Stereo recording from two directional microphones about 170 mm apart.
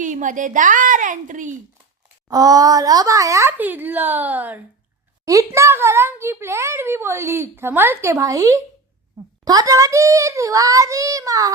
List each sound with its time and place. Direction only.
0.0 s a woman's voice: 50° right (ahead or behind)
2.3 s a child's voice: 20° right (ahead or behind)